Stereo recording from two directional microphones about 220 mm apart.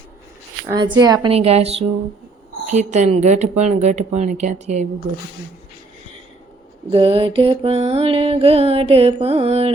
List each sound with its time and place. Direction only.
1.0 s music: 20° right (ahead or behind)
2.6 s speech: 30° right (ahead or behind)
6.9 s music: 25° right (ahead or behind)